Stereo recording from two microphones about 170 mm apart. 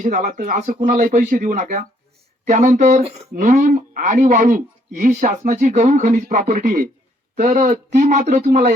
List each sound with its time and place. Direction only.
0.0 s speech: 50° right (ahead or behind)
8.4 s speech: 60° right (ahead or behind)